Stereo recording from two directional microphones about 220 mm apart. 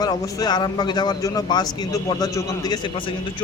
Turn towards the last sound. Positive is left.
turn(degrees=20)  # may be behind; listen again after turning